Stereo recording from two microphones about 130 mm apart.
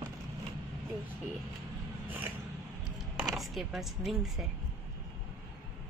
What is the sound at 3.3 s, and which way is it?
Speech, centre (ahead or behind).